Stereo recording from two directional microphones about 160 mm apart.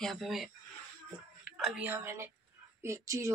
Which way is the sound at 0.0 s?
Centre (ahead or behind).